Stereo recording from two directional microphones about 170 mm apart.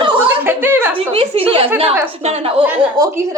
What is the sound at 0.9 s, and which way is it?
A woman's voice, 35° right (ahead or behind).